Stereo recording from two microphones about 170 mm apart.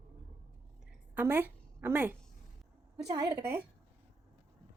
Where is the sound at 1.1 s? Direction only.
10° right (ahead or behind).